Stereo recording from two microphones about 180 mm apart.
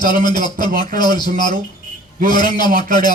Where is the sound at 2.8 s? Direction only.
25° left (ahead or behind).